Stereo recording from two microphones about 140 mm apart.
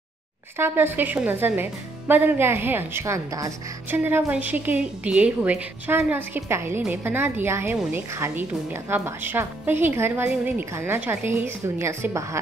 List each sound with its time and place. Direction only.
0.6 s a woman's voice: 15° right (ahead or behind)